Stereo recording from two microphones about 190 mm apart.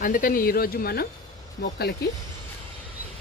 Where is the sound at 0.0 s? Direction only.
45° left (ahead or behind); by 2.0 s 60° left (ahead or behind).